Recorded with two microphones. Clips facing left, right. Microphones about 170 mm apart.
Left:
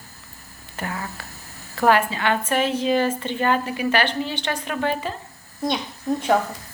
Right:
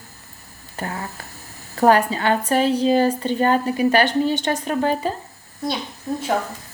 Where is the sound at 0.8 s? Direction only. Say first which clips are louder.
Right 1 dB; 30° right (ahead or behind).